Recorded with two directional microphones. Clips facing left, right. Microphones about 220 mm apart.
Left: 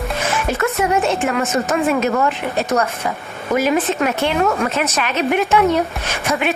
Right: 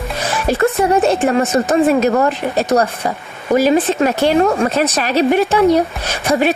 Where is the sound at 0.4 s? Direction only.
35° right (ahead or behind).